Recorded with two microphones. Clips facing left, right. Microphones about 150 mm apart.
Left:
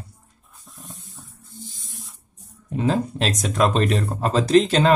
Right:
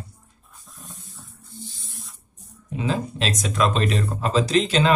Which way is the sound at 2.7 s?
50° left (ahead or behind).